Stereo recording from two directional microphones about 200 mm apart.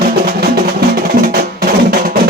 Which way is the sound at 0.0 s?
50° right (ahead or behind).